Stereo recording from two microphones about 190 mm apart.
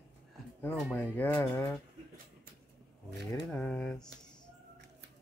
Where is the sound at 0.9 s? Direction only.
10° left (ahead or behind).